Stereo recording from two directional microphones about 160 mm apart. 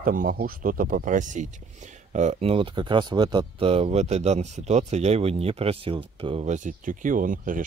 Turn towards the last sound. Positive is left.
turn(degrees=-55)  # may be behind; listen again after turning